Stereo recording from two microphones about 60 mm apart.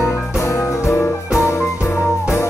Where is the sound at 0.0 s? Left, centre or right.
Left.